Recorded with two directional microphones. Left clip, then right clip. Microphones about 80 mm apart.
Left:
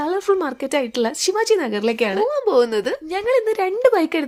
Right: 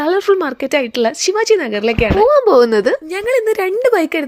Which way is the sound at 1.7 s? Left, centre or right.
Centre.